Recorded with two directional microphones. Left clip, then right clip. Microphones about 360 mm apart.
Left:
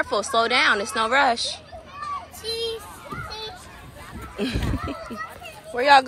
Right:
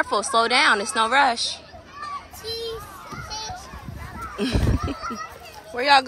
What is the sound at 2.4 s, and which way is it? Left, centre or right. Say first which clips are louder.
Child singing: left 3 dB; right.